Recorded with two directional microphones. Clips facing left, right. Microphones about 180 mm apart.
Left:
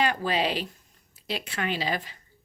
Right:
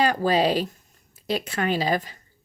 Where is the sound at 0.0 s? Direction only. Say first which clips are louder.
Right 5 dB; 40° right (ahead or behind).